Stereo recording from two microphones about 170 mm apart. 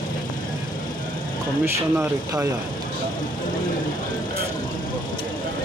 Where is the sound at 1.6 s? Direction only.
15° right (ahead or behind).